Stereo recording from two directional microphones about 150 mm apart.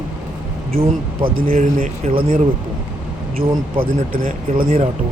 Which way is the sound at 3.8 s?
70° right (ahead or behind).